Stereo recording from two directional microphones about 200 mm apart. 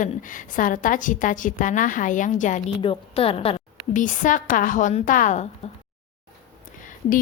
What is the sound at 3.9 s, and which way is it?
A woman's voice, 40° left (ahead or behind).